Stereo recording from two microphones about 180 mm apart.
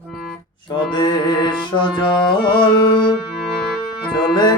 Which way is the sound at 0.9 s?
25° left (ahead or behind).